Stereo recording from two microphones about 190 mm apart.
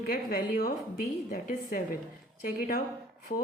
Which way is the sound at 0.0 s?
50° left (ahead or behind).